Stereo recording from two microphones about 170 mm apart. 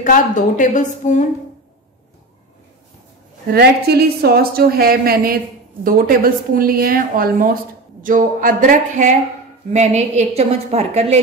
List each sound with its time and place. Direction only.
0.0 s a woman's voice: 50° left (ahead or behind)
3.5 s a woman's voice: 70° right (ahead or behind); by 11.1 s 40° right (ahead or behind)